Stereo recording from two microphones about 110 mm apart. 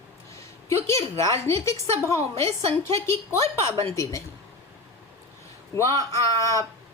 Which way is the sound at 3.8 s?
30° left (ahead or behind).